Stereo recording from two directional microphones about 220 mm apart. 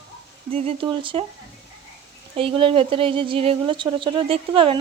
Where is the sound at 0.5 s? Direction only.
25° right (ahead or behind).